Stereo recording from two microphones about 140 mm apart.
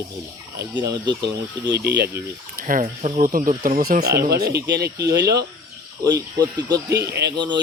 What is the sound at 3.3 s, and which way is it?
Speech, 85° right.